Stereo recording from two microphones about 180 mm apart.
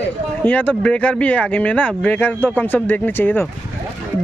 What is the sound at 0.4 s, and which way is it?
Speech, 10° left (ahead or behind).